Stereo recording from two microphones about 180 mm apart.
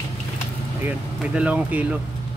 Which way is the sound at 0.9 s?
5° right (ahead or behind).